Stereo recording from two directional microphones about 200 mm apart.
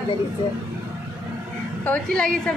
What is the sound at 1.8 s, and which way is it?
Speech, 5° left (ahead or behind).